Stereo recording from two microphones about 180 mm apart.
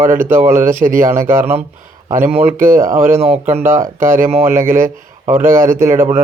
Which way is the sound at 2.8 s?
50° right (ahead or behind).